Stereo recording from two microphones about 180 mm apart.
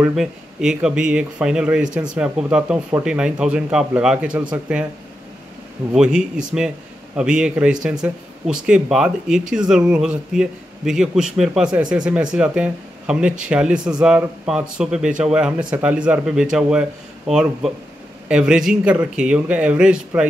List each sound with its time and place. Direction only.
0.0 s speech: centre (ahead or behind)
5.9 s speech: 5° right (ahead or behind)